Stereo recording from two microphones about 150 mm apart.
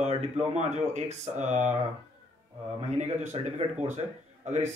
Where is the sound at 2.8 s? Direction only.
50° right (ahead or behind).